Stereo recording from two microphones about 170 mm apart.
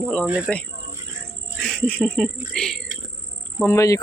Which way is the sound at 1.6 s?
5° left (ahead or behind).